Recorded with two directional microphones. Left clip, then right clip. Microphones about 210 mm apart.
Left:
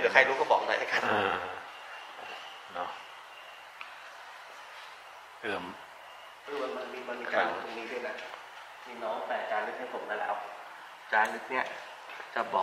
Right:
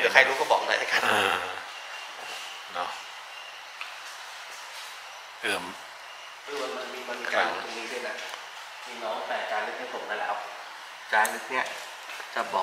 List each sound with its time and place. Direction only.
0.0 s a sound: 5° left (ahead or behind)
5.4 s a man's voice: 10° left (ahead or behind)
9.0 s speech: 30° left (ahead or behind)
9.3 s a man's voice: 10° left (ahead or behind)